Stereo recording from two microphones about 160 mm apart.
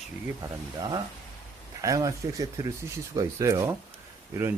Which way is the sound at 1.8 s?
20° right (ahead or behind).